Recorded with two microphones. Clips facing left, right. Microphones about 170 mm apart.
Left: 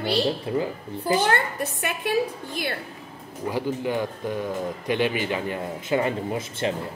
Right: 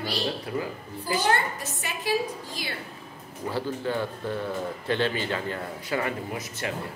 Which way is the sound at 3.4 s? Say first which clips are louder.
Left 3 dB; 15° left (ahead or behind).